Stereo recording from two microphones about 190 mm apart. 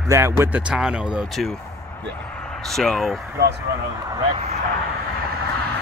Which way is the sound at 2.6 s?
Centre (ahead or behind).